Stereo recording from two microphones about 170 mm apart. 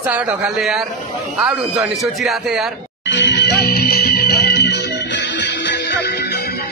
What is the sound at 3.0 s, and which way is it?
Music, 90° left.